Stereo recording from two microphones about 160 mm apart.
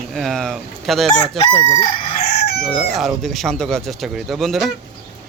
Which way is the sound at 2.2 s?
85° left.